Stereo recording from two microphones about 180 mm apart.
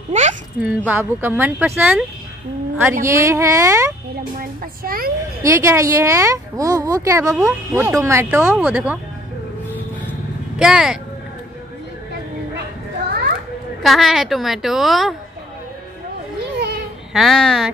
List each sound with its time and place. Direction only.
0.1 s a child's voice: 40° right (ahead or behind)
0.6 s speech: 10° right (ahead or behind)
4.4 s a woman's voice: 55° right (ahead or behind)
5.4 s speech: 15° right (ahead or behind)
10.6 s a woman's voice: 5° right (ahead or behind)
13.8 s a woman's voice: centre (ahead or behind)
17.1 s a woman's voice: centre (ahead or behind)